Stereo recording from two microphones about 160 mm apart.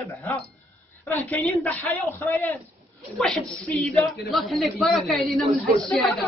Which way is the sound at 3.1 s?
Centre (ahead or behind).